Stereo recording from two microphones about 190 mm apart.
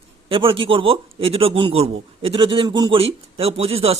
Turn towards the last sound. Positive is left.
turn(degrees=-30)  # may be behind; listen again after turning